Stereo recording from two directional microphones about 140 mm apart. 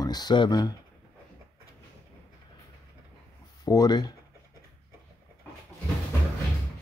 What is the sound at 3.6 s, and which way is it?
Speech, 30° left (ahead or behind).